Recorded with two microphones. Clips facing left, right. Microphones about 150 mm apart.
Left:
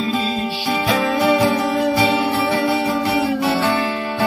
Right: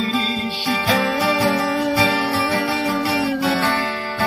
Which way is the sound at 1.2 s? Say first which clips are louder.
Left 3 dB; 20° left (ahead or behind).